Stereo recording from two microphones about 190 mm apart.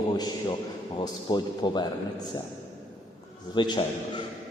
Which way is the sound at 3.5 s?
25° left (ahead or behind).